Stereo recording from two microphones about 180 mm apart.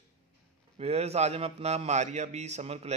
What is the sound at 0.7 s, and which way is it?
A man's voice, 35° right (ahead or behind).